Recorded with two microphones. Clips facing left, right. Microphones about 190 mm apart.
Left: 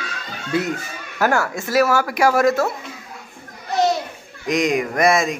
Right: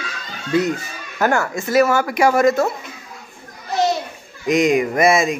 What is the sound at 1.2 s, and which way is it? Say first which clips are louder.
Speech: right 1 dB; centre (ahead or behind).